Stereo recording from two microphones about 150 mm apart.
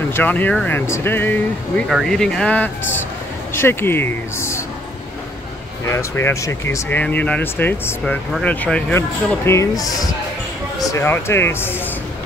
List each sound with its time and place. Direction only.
0.1 s speech: 10° left (ahead or behind)
1.9 s speech: centre (ahead or behind); by 4.6 s 20° left (ahead or behind)
5.9 s speech: 15° left (ahead or behind)